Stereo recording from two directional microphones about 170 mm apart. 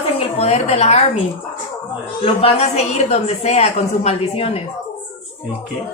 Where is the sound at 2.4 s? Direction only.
40° left (ahead or behind).